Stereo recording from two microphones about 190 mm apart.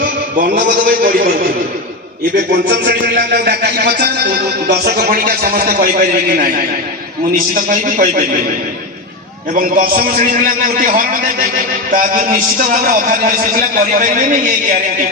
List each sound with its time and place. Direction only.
0.0 s a man's voice: 45° right (ahead or behind)
2.3 s speech: 50° right (ahead or behind)
9.6 s speech: 45° right (ahead or behind)